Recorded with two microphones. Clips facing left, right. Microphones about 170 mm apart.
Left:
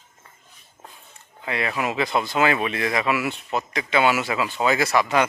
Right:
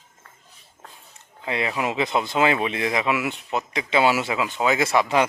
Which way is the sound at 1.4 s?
25° right (ahead or behind).